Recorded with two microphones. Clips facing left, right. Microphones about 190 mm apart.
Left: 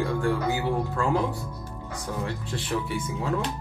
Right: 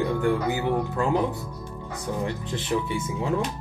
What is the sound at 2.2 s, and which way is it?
Speech, 20° right (ahead or behind).